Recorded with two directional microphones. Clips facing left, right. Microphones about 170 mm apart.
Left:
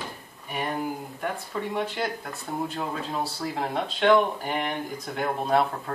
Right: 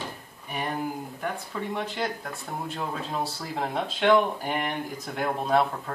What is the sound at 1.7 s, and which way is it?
Speech, centre (ahead or behind).